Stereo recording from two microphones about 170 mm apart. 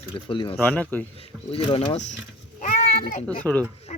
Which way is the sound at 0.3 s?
30° left (ahead or behind).